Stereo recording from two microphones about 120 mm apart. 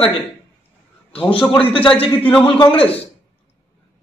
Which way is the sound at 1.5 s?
45° left (ahead or behind).